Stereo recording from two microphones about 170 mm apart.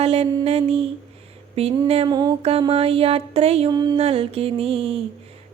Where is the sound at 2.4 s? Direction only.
35° right (ahead or behind).